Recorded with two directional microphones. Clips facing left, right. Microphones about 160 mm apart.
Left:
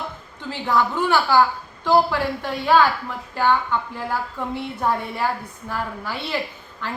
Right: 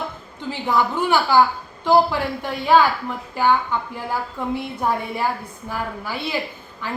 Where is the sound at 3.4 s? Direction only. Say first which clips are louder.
Right 1 dB; 15° right (ahead or behind).